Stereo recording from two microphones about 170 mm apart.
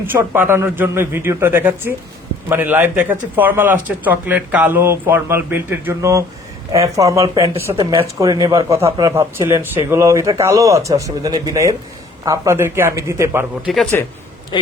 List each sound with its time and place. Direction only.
0.0 s a man's voice: 15° right (ahead or behind)
14.5 s speech: 30° left (ahead or behind)